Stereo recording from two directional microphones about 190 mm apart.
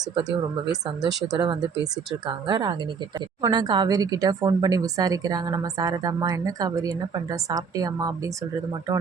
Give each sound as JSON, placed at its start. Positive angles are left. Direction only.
{"t": 0.1, "sound": "speech", "side_deg": -20}